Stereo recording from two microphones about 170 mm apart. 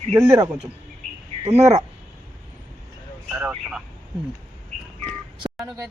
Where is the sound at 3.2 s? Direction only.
10° right (ahead or behind).